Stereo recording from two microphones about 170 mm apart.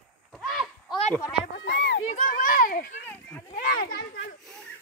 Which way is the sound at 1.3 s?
80° left.